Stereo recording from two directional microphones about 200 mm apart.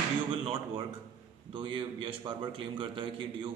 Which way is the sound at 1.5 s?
25° right (ahead or behind).